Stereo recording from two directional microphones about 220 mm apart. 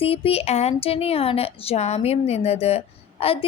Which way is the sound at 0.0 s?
25° left (ahead or behind).